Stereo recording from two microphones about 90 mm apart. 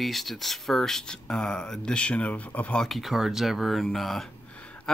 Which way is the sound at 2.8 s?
Centre (ahead or behind).